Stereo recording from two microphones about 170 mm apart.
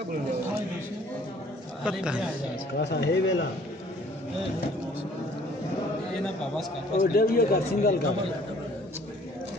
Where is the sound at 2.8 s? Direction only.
90° left.